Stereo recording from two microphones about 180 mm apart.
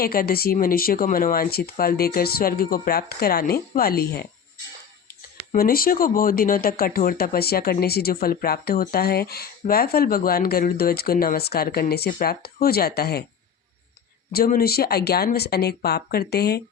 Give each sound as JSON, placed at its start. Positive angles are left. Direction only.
{"t": 0.0, "sound": "speech", "side_deg": 55}
{"t": 5.5, "sound": "speech", "side_deg": 55}
{"t": 14.3, "sound": "speech", "side_deg": 60}